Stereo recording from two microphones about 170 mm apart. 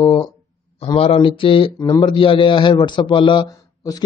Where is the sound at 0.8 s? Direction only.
35° left (ahead or behind).